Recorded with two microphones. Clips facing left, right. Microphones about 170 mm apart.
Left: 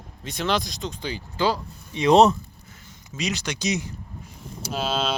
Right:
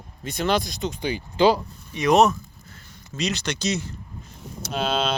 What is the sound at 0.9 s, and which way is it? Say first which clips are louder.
Speech: right 4 dB; 15° right (ahead or behind).